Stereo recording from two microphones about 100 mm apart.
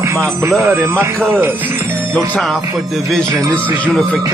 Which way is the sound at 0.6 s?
30° right (ahead or behind).